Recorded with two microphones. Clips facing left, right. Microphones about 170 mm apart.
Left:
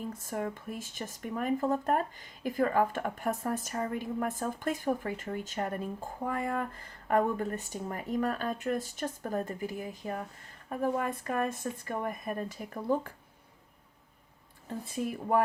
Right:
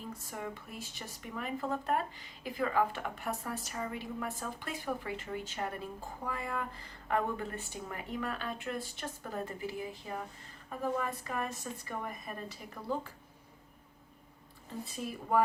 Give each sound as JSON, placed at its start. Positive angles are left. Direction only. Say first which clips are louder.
{"t": 0.1, "sound": "a woman's voice", "louder": "left 6 dB", "side_deg": 50}